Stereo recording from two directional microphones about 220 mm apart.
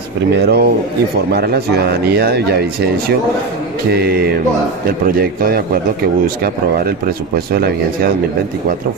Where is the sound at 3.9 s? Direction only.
45° right (ahead or behind).